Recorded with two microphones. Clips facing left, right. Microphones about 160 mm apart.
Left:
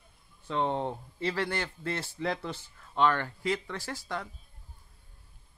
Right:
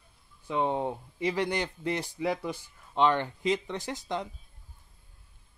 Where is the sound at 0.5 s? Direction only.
10° right (ahead or behind).